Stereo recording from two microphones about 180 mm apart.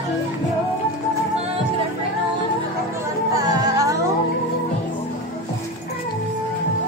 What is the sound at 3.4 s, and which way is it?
Music, 20° right (ahead or behind).